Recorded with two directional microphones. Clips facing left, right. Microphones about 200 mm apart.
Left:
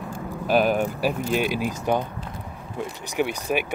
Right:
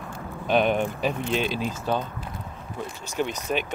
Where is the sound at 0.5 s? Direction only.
5° left (ahead or behind).